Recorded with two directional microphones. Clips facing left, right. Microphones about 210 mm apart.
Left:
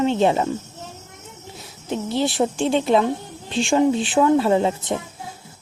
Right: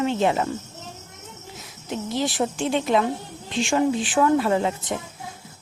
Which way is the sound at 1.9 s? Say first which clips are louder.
Left 3 dB; 30° left (ahead or behind).